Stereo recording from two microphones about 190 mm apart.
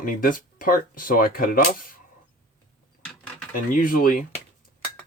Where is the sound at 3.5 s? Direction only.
45° left (ahead or behind).